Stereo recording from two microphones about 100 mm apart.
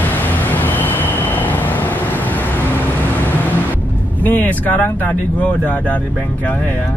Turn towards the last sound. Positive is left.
turn(degrees=15)  # may be behind; listen again after turning